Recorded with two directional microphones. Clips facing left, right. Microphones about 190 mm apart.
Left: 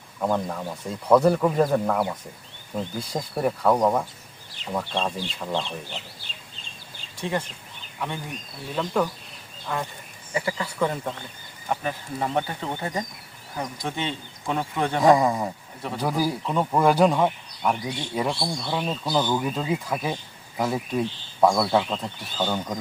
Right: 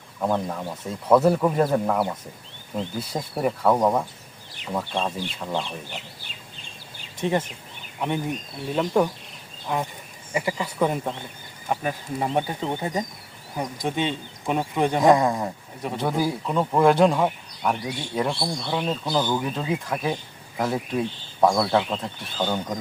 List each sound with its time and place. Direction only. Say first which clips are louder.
0.2 s speech: even; 5° right (ahead or behind)
7.2 s speech: right 4 dB; 20° right (ahead or behind)
15.0 s speech: left 1 dB; centre (ahead or behind)